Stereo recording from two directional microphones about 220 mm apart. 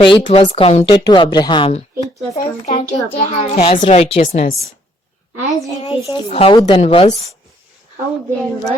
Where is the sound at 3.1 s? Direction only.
25° left (ahead or behind).